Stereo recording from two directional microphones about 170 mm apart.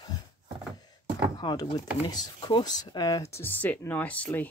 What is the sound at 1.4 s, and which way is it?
Speech, 25° left (ahead or behind).